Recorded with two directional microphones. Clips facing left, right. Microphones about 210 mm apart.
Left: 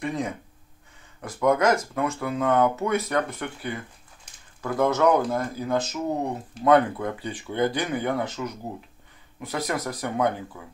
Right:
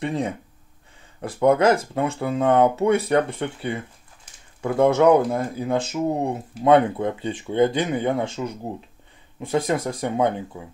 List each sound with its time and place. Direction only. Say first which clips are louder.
0.0 s speech: right 3 dB; 30° right (ahead or behind)